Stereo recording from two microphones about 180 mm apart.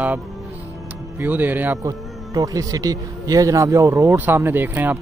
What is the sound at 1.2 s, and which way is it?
Speech, 10° right (ahead or behind).